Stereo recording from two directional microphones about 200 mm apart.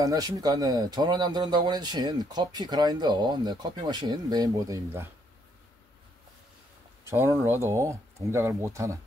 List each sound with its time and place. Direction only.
0.0 s speech: 20° right (ahead or behind)
7.1 s speech: 15° right (ahead or behind)